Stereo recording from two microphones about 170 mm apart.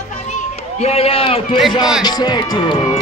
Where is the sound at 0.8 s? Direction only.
35° left (ahead or behind).